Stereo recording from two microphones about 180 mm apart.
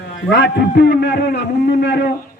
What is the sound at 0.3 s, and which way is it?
A man's voice, 75° left (ahead or behind).